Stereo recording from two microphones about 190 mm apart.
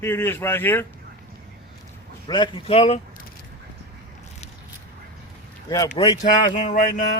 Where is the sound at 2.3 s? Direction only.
25° left (ahead or behind).